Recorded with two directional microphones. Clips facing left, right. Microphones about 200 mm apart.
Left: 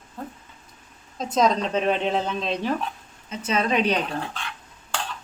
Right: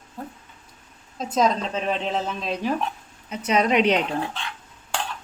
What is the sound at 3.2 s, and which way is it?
Speech, 15° right (ahead or behind).